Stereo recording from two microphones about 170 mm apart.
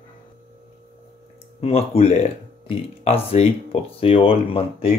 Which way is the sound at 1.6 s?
35° left (ahead or behind).